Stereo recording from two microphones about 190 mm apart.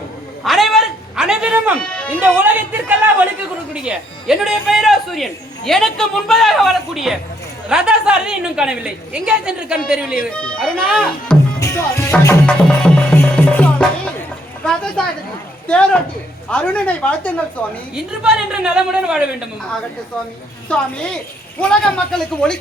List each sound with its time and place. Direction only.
0.4 s cat: centre (ahead or behind)
1.8 s music: 5° left (ahead or behind)
2.2 s a woman's voice: 10° right (ahead or behind)
11.6 s music: 15° left (ahead or behind)
12.5 s music: 5° left (ahead or behind)
14.6 s a woman's voice: 5° left (ahead or behind)
17.9 s speech: 5° right (ahead or behind)
20.7 s speech: 5° left (ahead or behind)